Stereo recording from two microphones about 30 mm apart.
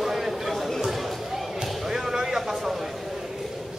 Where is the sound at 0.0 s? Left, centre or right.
Centre.